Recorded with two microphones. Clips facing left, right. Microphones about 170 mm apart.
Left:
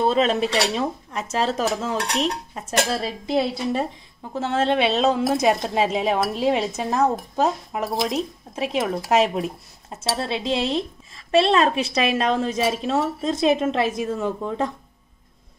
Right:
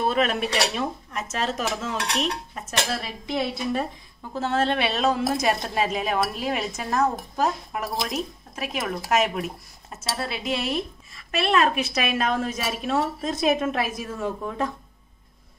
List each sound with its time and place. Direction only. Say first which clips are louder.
0.0 s speech: left 4 dB; 30° left (ahead or behind)
1.3 s dishes: left 5 dB; 35° left (ahead or behind)
4.3 s a woman's voice: left 2 dB; 20° left (ahead or behind)